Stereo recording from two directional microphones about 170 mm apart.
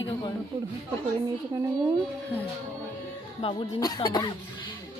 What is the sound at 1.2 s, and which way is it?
Speech, 20° right (ahead or behind).